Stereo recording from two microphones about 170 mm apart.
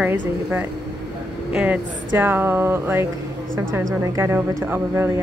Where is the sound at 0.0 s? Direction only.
10° right (ahead or behind).